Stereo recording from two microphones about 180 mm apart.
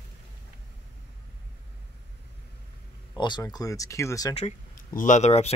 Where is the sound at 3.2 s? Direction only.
25° left (ahead or behind).